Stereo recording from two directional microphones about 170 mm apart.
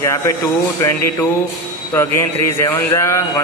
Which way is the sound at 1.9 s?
15° left (ahead or behind).